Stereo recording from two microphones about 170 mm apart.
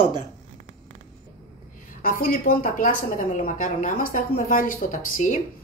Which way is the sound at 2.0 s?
55° left (ahead or behind).